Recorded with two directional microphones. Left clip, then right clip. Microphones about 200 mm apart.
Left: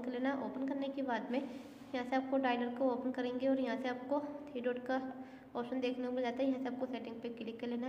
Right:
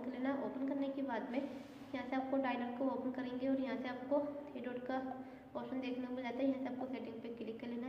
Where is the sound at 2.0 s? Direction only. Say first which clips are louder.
Left 3 dB; 45° left (ahead or behind).